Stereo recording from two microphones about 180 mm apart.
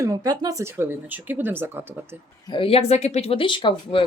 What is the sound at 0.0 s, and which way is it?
Speech, 20° right (ahead or behind).